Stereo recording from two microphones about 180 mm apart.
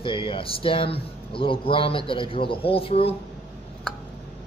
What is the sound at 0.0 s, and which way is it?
Speech, 30° left (ahead or behind).